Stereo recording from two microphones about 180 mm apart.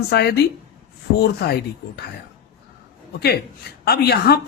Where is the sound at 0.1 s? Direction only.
65° left (ahead or behind).